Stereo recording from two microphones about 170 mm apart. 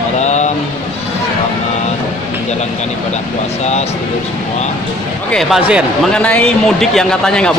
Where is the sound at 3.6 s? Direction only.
40° left (ahead or behind).